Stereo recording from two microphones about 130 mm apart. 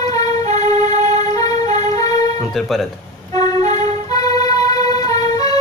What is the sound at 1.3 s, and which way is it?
Music, 30° left (ahead or behind).